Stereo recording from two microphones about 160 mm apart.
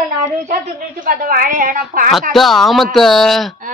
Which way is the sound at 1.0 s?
60° right (ahead or behind).